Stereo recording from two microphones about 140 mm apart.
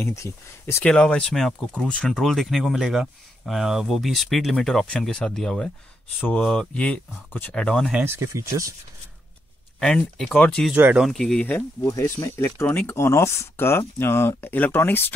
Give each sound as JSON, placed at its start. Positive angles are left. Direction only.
{"t": 0.0, "sound": "speech", "side_deg": 20}
{"t": 0.9, "sound": "speech", "side_deg": 5}
{"t": 7.9, "sound": "speech", "side_deg": -15}
{"t": 9.8, "sound": "speech", "side_deg": 5}
{"t": 10.7, "sound": "speech", "side_deg": -10}
{"t": 11.1, "sound": "speech", "side_deg": 0}
{"t": 11.4, "sound": "speech", "side_deg": 15}